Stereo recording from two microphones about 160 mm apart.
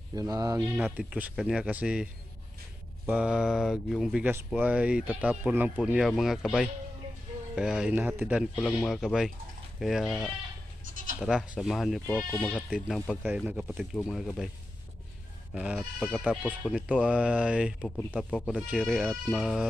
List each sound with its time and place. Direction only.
0.1 s speech: 20° right (ahead or behind)
0.7 s speech: 10° right (ahead or behind)
3.1 s speech: 5° right (ahead or behind)
13.5 s speech: 5° right (ahead or behind)
15.5 s speech: 5° right (ahead or behind)
17.8 s speech: 5° left (ahead or behind)